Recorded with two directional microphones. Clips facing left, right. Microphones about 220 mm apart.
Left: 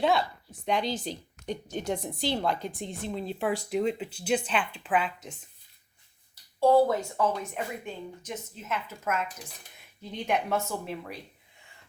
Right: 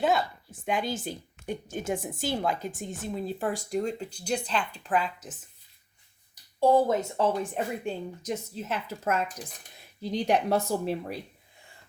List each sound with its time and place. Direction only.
0.0 s speech: 5° right (ahead or behind)
6.3 s speech: 15° right (ahead or behind); by 11.2 s 35° right (ahead or behind)